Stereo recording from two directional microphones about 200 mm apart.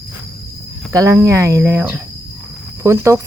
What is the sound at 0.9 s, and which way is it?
Speech, 15° right (ahead or behind).